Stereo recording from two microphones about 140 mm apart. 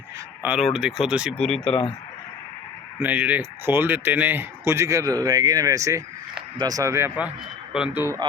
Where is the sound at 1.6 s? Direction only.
45° left (ahead or behind).